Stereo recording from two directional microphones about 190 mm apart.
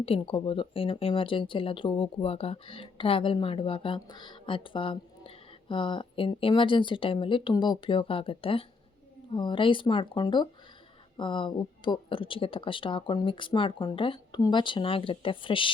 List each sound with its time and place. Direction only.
0.0 s speech: 30° left (ahead or behind)